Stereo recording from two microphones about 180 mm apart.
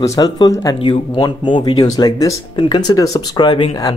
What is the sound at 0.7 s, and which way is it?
Speech, 30° left (ahead or behind).